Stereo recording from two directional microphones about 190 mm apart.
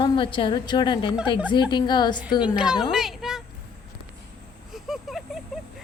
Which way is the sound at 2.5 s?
5° right (ahead or behind).